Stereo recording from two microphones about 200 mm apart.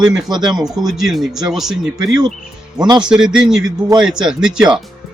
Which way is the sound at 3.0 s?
5° right (ahead or behind).